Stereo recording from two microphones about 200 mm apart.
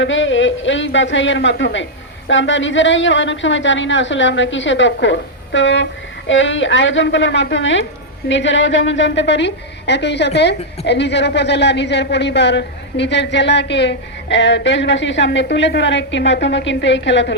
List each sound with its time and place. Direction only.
0.0 s a woman's voice: 70° left (ahead or behind)